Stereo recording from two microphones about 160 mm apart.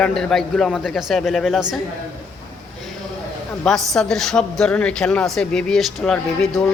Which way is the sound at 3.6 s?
5° left (ahead or behind).